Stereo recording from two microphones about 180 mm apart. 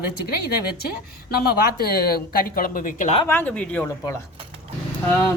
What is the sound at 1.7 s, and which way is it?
A woman's voice, 60° left (ahead or behind).